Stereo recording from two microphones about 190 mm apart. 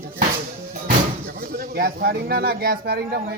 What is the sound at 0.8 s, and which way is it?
Speech, 50° right (ahead or behind).